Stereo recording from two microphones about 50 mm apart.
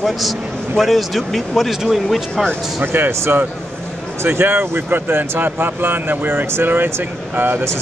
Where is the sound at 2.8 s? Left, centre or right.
Right.